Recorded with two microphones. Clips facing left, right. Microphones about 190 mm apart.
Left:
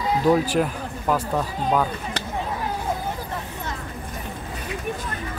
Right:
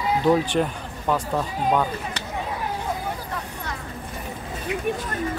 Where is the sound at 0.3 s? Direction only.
5° left (ahead or behind).